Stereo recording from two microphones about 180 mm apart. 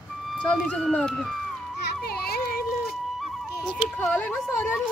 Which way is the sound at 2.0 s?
60° left (ahead or behind).